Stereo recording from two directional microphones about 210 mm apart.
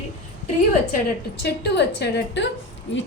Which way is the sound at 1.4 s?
50° left (ahead or behind).